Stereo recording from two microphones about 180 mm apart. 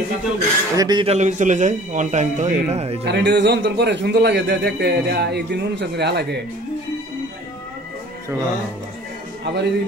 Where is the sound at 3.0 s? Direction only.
70° right (ahead or behind).